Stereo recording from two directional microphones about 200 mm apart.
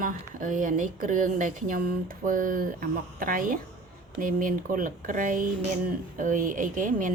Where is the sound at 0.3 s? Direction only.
40° right (ahead or behind).